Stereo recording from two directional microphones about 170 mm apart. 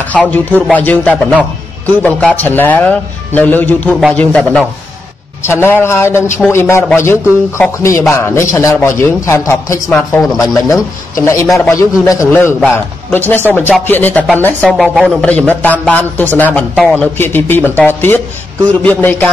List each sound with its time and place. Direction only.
0.1 s speech: 10° left (ahead or behind)
9.8 s speech: 5° left (ahead or behind)
10.4 s speech: 20° left (ahead or behind)
11.4 s speech: centre (ahead or behind)
11.7 s speech: 20° left (ahead or behind)
14.6 s speech: centre (ahead or behind)